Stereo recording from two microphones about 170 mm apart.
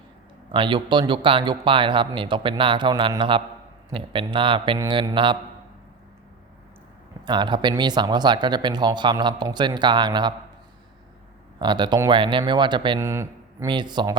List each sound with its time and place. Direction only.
0.5 s speech: 30° right (ahead or behind)
7.3 s speech: 25° right (ahead or behind)
11.6 s speech: 25° right (ahead or behind)
13.0 s speech: 15° right (ahead or behind)
13.7 s speech: 25° right (ahead or behind)